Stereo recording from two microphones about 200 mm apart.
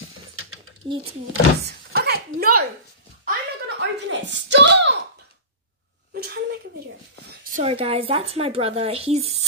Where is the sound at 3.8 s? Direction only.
60° right (ahead or behind).